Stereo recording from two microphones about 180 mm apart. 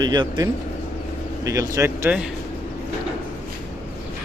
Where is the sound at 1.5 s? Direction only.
15° right (ahead or behind).